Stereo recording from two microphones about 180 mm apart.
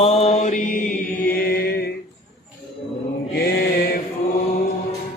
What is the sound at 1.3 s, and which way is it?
Chant, 60° left (ahead or behind).